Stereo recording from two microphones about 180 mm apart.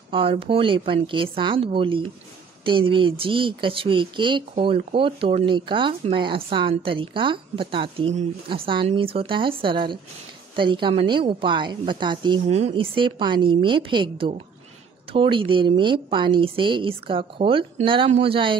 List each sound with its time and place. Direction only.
0.1 s speech: 30° right (ahead or behind)
12.4 s speech: 35° right (ahead or behind)